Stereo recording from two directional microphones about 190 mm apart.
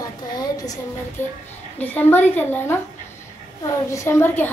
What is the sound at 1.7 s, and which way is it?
A child's voice, 10° left (ahead or behind).